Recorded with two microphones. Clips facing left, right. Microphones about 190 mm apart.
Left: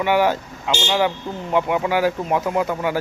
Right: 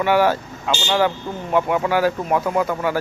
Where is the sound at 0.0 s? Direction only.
15° left (ahead or behind).